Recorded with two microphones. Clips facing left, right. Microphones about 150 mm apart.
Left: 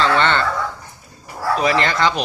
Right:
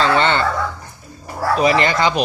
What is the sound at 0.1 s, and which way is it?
Dog, 15° right (ahead or behind).